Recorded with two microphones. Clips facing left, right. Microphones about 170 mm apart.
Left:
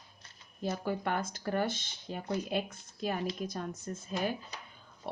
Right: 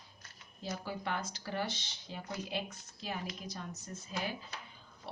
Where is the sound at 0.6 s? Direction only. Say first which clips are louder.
Left 7 dB; 55° left (ahead or behind).